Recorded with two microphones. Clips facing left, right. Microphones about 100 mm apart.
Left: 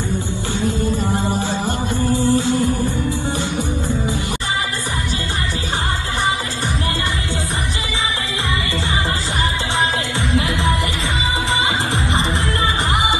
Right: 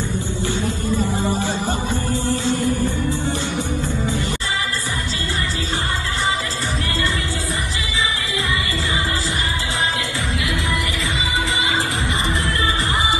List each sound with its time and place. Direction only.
2.1 s music: 20° left (ahead or behind)